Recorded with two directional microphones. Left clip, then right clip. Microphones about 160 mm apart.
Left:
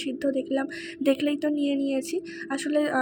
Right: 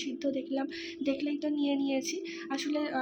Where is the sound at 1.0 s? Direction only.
45° left (ahead or behind).